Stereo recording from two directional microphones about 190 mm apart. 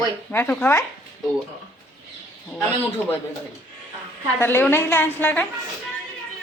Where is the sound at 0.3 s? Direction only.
10° left (ahead or behind).